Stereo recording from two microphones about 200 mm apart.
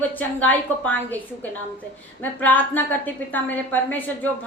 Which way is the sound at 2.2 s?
10° left (ahead or behind).